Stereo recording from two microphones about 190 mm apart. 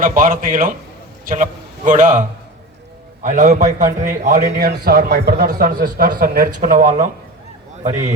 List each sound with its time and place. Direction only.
0.0 s a man's voice: 45° right (ahead or behind)
3.2 s a man's voice: 40° right (ahead or behind)